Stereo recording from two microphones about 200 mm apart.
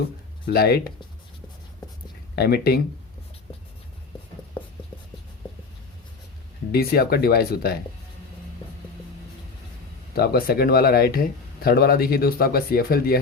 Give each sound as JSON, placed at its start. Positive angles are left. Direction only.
{"t": 0.4, "sound": "speech", "side_deg": 50}
{"t": 2.3, "sound": "speech", "side_deg": 55}
{"t": 4.6, "sound": "writing", "side_deg": 25}
{"t": 6.7, "sound": "speech", "side_deg": 50}
{"t": 10.2, "sound": "speech", "side_deg": 50}